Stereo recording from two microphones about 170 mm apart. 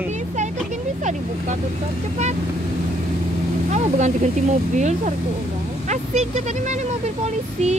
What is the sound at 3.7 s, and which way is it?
Vehicle, 45° right (ahead or behind).